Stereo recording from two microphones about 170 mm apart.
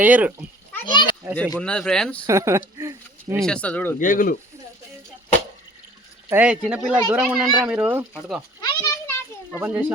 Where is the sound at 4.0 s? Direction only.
50° left (ahead or behind).